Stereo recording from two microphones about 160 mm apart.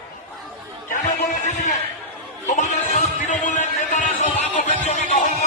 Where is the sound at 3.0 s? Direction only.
50° left (ahead or behind).